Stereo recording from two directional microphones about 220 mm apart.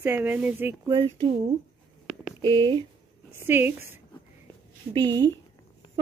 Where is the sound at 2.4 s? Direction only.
20° right (ahead or behind).